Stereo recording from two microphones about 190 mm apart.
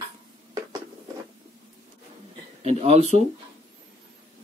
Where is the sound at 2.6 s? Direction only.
35° right (ahead or behind).